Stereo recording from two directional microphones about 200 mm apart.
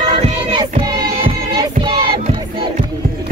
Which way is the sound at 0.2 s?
25° right (ahead or behind).